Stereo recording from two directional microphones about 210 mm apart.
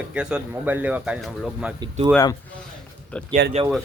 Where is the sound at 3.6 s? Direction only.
25° right (ahead or behind).